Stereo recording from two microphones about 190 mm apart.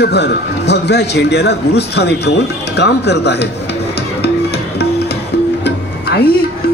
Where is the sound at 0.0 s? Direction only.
60° left (ahead or behind).